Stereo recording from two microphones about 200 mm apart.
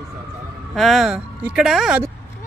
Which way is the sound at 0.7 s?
Centre (ahead or behind).